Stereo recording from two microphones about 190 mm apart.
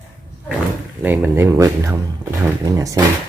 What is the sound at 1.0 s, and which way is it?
Speech, 10° right (ahead or behind).